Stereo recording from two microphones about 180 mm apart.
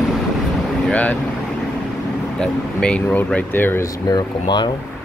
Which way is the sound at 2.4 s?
5° left (ahead or behind).